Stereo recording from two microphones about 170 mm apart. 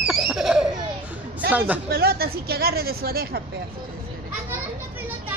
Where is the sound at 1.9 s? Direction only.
65° right (ahead or behind).